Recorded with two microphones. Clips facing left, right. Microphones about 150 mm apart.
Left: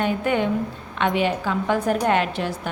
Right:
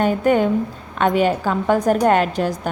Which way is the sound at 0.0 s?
45° right (ahead or behind).